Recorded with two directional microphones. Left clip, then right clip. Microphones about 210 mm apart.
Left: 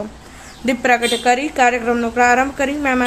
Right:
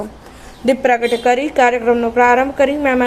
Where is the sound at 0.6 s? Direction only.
Centre (ahead or behind).